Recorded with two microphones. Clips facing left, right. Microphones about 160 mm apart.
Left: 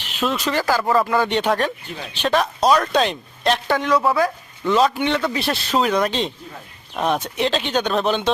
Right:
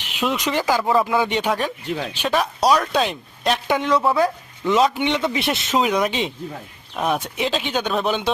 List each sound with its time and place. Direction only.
0.0 s speech: 15° right (ahead or behind)
1.8 s speech: 75° right (ahead or behind)
2.2 s speech: 10° right (ahead or behind)
3.7 s speech: 20° right (ahead or behind)